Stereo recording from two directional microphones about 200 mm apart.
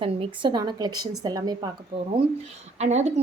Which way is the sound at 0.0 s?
25° right (ahead or behind).